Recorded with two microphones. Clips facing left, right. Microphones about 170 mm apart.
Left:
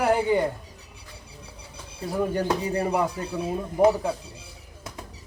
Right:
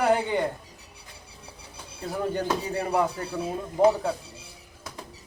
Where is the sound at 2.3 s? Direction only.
10° left (ahead or behind).